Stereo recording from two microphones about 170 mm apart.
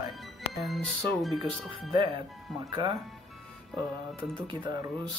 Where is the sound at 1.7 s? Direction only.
30° right (ahead or behind).